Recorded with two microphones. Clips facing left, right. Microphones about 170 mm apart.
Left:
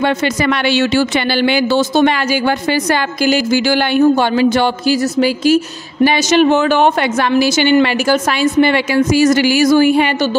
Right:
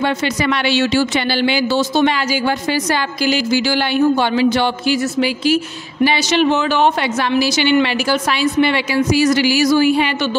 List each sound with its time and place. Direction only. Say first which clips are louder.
0.0 s speech: left 3 dB; 50° left (ahead or behind)